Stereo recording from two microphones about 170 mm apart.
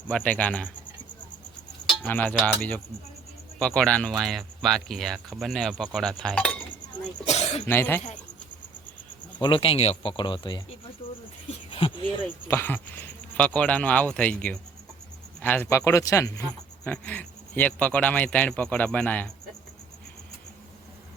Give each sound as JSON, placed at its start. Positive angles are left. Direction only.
{"t": 0.1, "sound": "speech", "side_deg": 10}
{"t": 1.9, "sound": "music", "side_deg": 10}
{"t": 2.6, "sound": "speech", "side_deg": 10}
{"t": 7.3, "sound": "speech", "side_deg": 40}
{"t": 7.7, "sound": "speech", "side_deg": 10}
{"t": 9.4, "sound": "speech", "side_deg": 30}
{"t": 11.7, "sound": "a sound", "side_deg": 30}
{"t": 12.5, "sound": "speech", "side_deg": 10}